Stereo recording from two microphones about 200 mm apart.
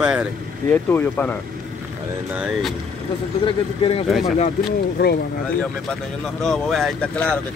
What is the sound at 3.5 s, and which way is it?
Speech, 25° left (ahead or behind).